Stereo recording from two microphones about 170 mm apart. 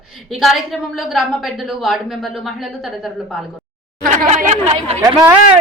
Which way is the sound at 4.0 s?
50° right (ahead or behind).